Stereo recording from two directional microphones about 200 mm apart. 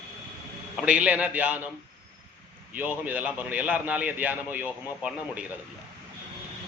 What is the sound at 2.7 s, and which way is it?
A man's voice, 10° right (ahead or behind).